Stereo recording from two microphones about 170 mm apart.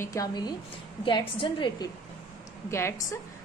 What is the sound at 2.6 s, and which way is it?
Speech, 15° left (ahead or behind).